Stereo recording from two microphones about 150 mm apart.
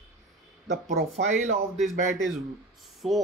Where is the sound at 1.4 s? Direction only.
Centre (ahead or behind).